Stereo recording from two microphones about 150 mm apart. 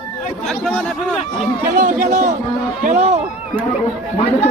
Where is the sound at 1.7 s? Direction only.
55° right (ahead or behind).